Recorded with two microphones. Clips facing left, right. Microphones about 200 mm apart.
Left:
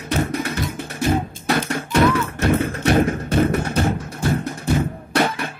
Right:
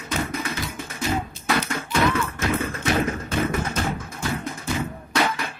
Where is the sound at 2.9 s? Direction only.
50° left (ahead or behind).